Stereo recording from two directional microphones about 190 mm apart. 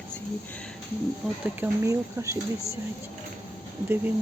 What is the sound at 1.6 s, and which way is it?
Speech, 15° right (ahead or behind).